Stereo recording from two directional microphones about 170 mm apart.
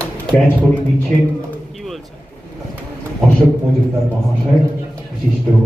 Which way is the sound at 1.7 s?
Centre (ahead or behind).